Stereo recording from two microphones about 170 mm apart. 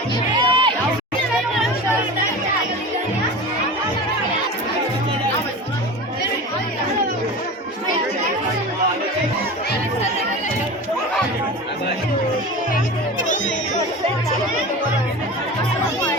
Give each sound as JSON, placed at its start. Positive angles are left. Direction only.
{"t": 0.3, "sound": "music", "side_deg": -30}
{"t": 13.2, "sound": "music", "side_deg": 50}